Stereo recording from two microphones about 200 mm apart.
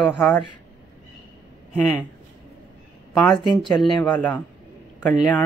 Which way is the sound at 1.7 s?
10° left (ahead or behind).